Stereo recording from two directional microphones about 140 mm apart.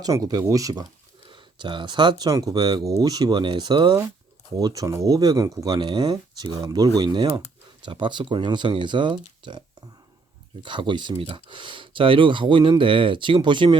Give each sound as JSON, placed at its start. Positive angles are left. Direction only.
{"t": 0.0, "sound": "speech", "side_deg": -25}